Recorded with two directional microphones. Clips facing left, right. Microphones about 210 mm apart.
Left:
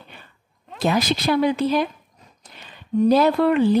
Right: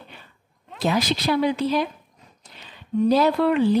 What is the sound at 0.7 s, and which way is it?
Speech, 50° left (ahead or behind).